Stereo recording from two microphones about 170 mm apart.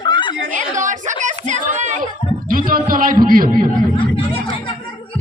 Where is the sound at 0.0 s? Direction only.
25° left (ahead or behind).